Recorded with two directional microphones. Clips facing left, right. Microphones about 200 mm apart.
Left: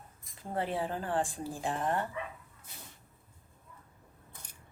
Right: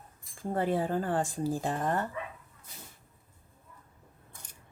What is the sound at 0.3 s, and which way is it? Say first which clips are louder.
Speech: right 5 dB; 45° right (ahead or behind).